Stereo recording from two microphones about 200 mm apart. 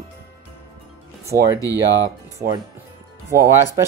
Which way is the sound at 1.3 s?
45° right (ahead or behind).